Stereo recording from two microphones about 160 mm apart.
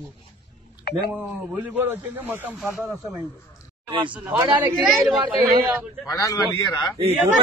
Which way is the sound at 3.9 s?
30° right (ahead or behind).